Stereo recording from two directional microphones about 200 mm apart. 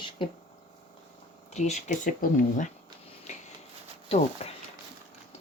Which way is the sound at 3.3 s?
35° left (ahead or behind).